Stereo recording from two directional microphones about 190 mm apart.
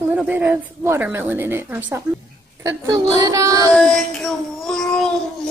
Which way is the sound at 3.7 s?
5° left (ahead or behind).